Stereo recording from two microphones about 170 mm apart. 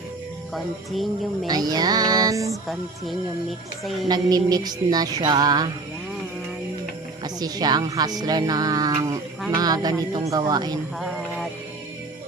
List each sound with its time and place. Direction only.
0.5 s music: centre (ahead or behind)
1.5 s speech: 25° right (ahead or behind)
4.1 s speech: 20° right (ahead or behind)
7.3 s speech: 25° right (ahead or behind)
11.0 s music: centre (ahead or behind)